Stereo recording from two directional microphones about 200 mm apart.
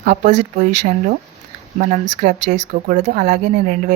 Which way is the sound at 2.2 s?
40° right (ahead or behind).